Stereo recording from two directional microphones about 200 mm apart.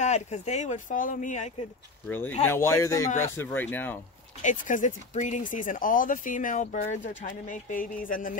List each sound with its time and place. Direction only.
0.0 s speech: 35° left (ahead or behind)
2.0 s speech: 10° left (ahead or behind)
4.4 s speech: 40° left (ahead or behind)